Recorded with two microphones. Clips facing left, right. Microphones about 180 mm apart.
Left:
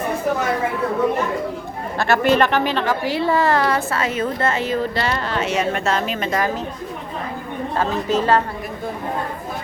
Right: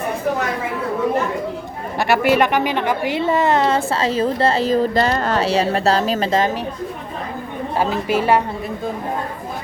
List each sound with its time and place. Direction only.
2.0 s a woman's voice: 10° right (ahead or behind); by 6.5 s 30° right (ahead or behind)
7.8 s a woman's voice: 10° right (ahead or behind)